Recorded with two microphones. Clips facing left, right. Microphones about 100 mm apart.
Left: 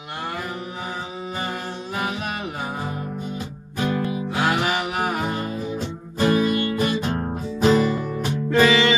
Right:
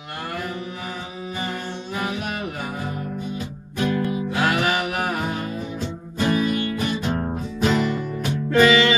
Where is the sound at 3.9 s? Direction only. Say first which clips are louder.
Right 1 dB; 30° left (ahead or behind).